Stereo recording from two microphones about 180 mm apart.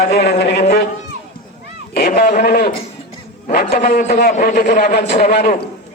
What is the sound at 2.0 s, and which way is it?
A man's voice, 50° left (ahead or behind).